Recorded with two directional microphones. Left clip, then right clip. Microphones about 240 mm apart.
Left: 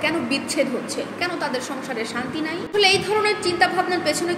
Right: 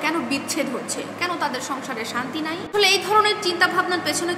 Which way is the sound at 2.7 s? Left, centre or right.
Right.